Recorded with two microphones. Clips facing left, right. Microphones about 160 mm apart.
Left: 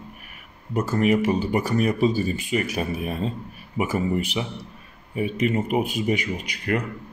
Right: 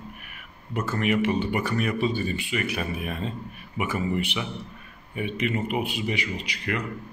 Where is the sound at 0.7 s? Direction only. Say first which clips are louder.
Left 4 dB; 40° left (ahead or behind).